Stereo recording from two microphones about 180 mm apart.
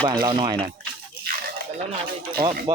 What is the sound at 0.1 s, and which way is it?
Speech, 25° right (ahead or behind).